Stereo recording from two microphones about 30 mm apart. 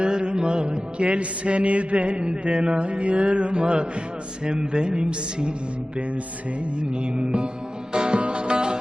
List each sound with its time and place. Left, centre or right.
0.0 s music: right
2.2 s mantra: right
6.9 s mantra: right
7.9 s music: right